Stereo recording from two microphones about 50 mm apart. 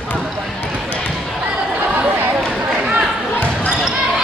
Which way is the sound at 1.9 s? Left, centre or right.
Right.